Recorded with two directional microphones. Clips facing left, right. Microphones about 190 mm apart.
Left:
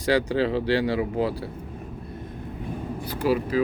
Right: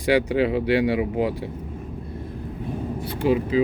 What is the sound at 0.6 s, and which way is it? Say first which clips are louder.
Speech: right 3 dB; 35° left (ahead or behind).